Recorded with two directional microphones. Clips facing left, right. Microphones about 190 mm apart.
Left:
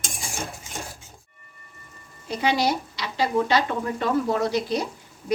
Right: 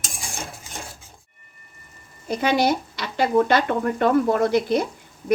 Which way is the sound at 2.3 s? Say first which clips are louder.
Right 3 dB; 50° right (ahead or behind).